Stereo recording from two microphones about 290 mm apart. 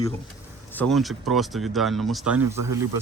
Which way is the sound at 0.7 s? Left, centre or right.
Centre.